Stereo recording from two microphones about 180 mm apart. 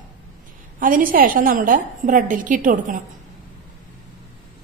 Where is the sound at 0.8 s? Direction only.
50° right (ahead or behind).